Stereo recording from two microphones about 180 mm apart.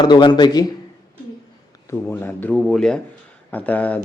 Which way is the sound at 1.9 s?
10° left (ahead or behind).